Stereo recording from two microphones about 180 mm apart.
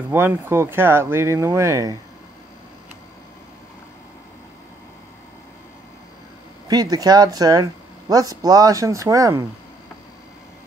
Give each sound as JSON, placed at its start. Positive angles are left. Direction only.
{"t": 0.1, "sound": "speech", "side_deg": -15}
{"t": 6.7, "sound": "speech", "side_deg": -20}